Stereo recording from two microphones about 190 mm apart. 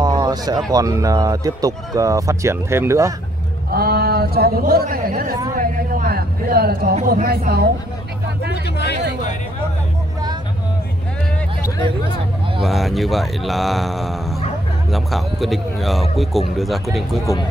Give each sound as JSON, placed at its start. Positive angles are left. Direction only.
{"t": 0.0, "sound": "a sound", "side_deg": -20}
{"t": 0.7, "sound": "speech", "side_deg": -20}
{"t": 3.7, "sound": "a man's voice", "side_deg": -55}
{"t": 12.6, "sound": "a man's voice", "side_deg": 0}